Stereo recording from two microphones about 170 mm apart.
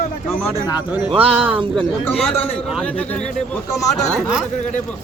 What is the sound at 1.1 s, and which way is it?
Speech, 35° right (ahead or behind).